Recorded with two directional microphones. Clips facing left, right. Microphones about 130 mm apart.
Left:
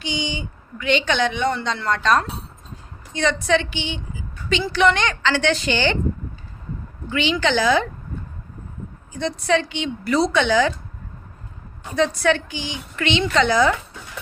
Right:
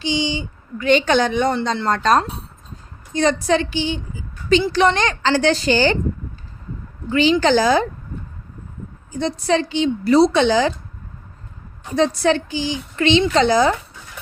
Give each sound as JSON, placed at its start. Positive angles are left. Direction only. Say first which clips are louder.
{"t": 0.0, "sound": "speech", "louder": "right 5 dB", "side_deg": -30}
{"t": 0.9, "sound": "a woman's voice", "louder": "right 4 dB", "side_deg": -45}
{"t": 7.1, "sound": "a woman's voice", "louder": "right 6 dB", "side_deg": -40}
{"t": 9.1, "sound": "a woman's voice", "louder": "right 2 dB", "side_deg": -35}
{"t": 11.9, "sound": "a woman's voice", "louder": "right 2 dB", "side_deg": -35}